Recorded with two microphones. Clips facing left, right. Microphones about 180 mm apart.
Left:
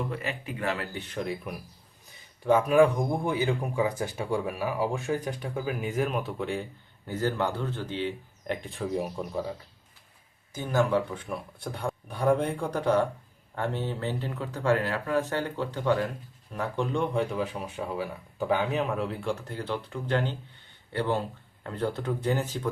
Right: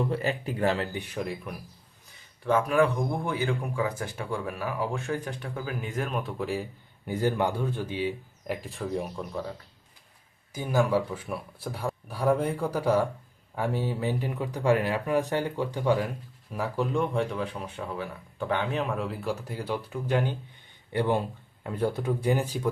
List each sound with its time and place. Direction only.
0.1 s speech: 35° right (ahead or behind)
0.9 s speech: 10° right (ahead or behind)
2.4 s speech: 10° left (ahead or behind)
7.1 s speech: 15° right (ahead or behind); by 9.2 s 5° left (ahead or behind)
10.5 s speech: 10° right (ahead or behind)